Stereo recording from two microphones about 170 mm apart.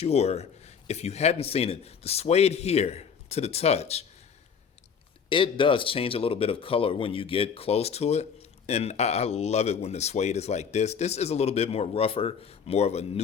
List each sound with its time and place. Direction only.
0.0 s speech: 40° left (ahead or behind)
5.3 s speech: 30° left (ahead or behind)